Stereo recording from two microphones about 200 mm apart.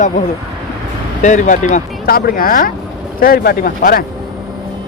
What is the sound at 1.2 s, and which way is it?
Speech, 35° left (ahead or behind).